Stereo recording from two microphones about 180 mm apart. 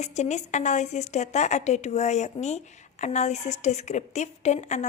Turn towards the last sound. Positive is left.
turn(degrees=40)  # may be behind; listen again after turning